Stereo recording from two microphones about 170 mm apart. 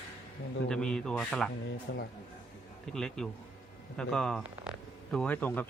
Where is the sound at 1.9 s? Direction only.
85° left.